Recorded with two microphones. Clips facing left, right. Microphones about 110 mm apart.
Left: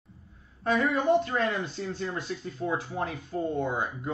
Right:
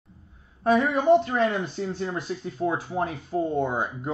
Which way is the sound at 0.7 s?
25° right (ahead or behind).